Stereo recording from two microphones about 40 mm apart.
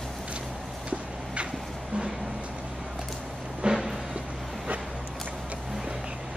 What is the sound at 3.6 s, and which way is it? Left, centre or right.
Music, right.